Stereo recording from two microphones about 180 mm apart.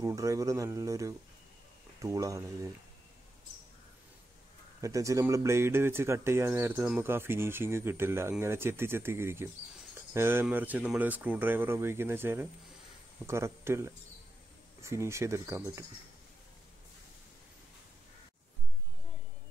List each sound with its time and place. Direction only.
0.0 s speech: 20° right (ahead or behind)
4.8 s speech: 20° right (ahead or behind)